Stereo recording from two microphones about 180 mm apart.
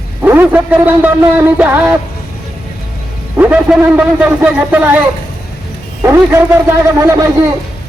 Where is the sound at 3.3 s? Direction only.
10° right (ahead or behind).